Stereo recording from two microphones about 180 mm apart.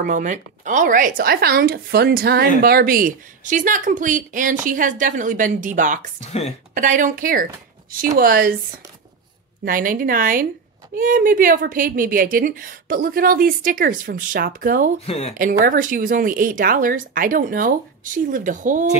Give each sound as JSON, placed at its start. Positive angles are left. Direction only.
{"t": 0.0, "sound": "a woman's voice", "side_deg": -45}
{"t": 9.7, "sound": "a woman's voice", "side_deg": -50}
{"t": 15.0, "sound": "speech", "side_deg": 35}
{"t": 15.3, "sound": "a woman's voice", "side_deg": -50}